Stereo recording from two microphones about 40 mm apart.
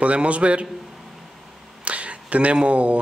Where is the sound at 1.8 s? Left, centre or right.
Right.